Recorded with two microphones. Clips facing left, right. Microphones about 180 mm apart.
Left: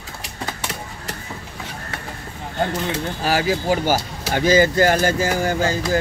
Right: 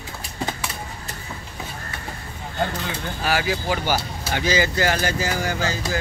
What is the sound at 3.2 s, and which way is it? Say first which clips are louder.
Speech: left 2 dB; 40° left (ahead or behind).